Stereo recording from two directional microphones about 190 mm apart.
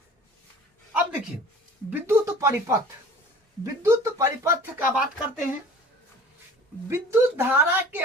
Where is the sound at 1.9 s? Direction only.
15° right (ahead or behind).